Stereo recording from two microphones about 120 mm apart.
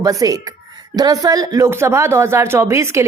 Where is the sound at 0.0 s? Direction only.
30° right (ahead or behind).